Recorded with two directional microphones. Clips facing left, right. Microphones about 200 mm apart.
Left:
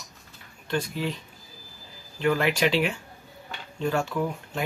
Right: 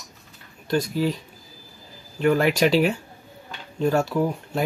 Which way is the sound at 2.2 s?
40° right (ahead or behind).